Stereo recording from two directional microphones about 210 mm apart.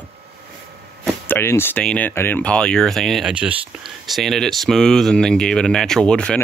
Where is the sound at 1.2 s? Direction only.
10° left (ahead or behind).